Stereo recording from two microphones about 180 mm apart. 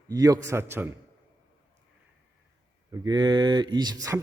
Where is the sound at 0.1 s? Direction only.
20° right (ahead or behind).